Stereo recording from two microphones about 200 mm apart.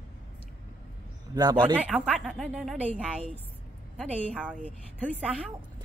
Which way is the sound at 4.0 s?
5° left (ahead or behind).